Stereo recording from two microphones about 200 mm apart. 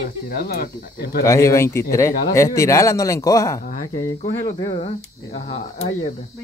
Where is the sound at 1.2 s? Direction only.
15° left (ahead or behind).